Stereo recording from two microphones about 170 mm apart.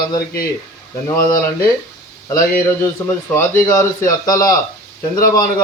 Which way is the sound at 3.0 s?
10° left (ahead or behind).